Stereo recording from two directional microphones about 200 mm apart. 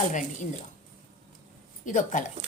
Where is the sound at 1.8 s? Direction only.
40° left (ahead or behind).